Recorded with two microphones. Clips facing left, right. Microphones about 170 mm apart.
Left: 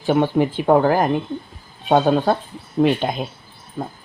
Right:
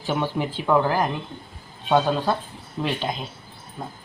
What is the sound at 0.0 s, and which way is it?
Speech, 55° left (ahead or behind).